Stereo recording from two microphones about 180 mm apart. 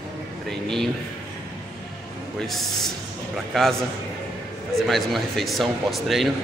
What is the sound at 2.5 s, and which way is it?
A man's voice, centre (ahead or behind).